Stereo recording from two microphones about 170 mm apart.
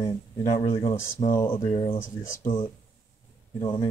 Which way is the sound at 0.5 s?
40° left (ahead or behind).